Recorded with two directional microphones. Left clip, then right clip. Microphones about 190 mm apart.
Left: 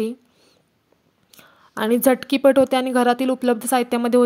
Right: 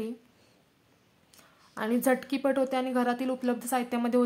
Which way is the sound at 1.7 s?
40° left (ahead or behind).